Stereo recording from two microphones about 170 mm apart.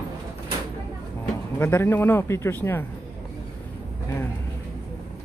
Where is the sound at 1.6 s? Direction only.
10° left (ahead or behind).